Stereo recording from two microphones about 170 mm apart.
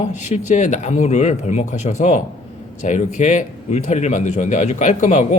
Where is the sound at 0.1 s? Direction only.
45° left (ahead or behind).